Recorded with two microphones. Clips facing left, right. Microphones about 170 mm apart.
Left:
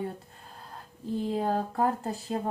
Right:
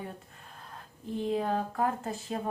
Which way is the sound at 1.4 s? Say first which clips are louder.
Left 3 dB; 35° left (ahead or behind).